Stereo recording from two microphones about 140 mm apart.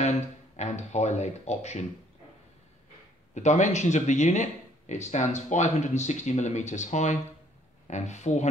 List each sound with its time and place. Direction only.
0.6 s speech: 55° left (ahead or behind)
3.3 s speech: 60° left (ahead or behind)